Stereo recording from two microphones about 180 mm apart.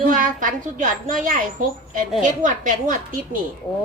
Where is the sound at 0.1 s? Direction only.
45° right (ahead or behind).